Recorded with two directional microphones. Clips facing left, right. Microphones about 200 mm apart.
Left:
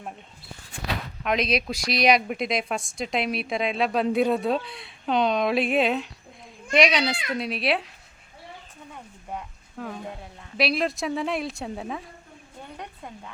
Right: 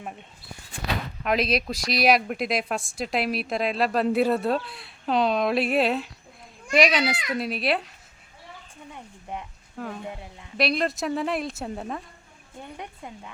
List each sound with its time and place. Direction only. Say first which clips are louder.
1.2 s speech: even; centre (ahead or behind)
9.7 s speech: right 1 dB; centre (ahead or behind)
12.7 s a sound: even; 10° right (ahead or behind)